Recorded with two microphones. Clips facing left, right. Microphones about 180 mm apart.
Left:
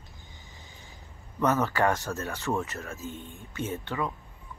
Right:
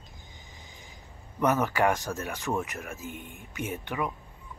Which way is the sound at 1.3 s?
15° right (ahead or behind).